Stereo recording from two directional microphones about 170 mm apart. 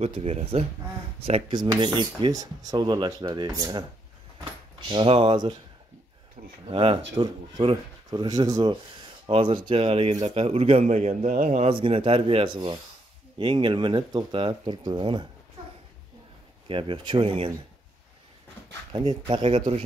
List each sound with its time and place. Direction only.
0.0 s a man's voice: 35° right (ahead or behind)
6.4 s speech: 45° right (ahead or behind)
6.7 s a man's voice: 30° right (ahead or behind)
16.6 s a man's voice: 30° right (ahead or behind)
18.9 s speech: 30° right (ahead or behind)